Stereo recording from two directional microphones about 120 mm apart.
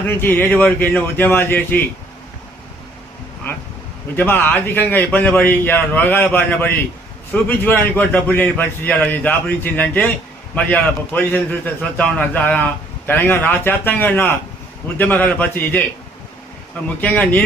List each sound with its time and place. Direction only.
0.0 s a man's voice: 15° left (ahead or behind)
4.1 s a man's voice: 15° left (ahead or behind)
17.0 s a man's voice: 10° left (ahead or behind)